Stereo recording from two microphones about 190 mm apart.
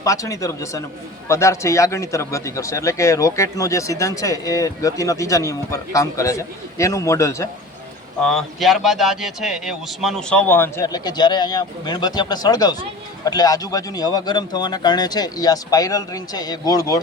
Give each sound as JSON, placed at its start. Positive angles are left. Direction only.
{"t": 0.0, "sound": "speech", "side_deg": 15}
{"t": 8.2, "sound": "speech", "side_deg": 0}